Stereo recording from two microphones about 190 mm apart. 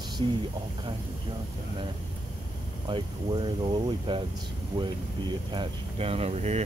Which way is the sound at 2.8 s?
25° right (ahead or behind).